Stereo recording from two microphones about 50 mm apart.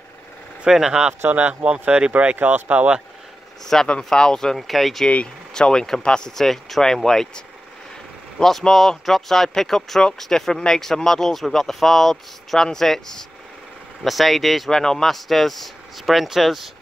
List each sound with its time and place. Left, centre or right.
0.7 s speech: centre
1.3 s speech: right
2.3 s speech: right
3.8 s speech: centre
5.5 s speech: centre
14.7 s speech: centre